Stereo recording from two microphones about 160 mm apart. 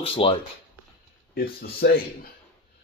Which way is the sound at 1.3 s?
70° left (ahead or behind).